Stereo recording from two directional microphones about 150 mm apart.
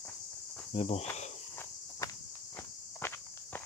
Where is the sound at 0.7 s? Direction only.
45° left (ahead or behind).